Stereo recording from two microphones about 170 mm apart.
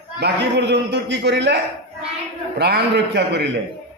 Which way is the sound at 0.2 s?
85° right.